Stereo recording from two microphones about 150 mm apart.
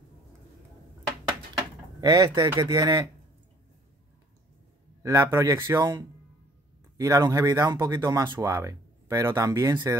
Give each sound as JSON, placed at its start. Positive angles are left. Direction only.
{"t": 2.0, "sound": "speech", "side_deg": -20}
{"t": 5.0, "sound": "speech", "side_deg": -25}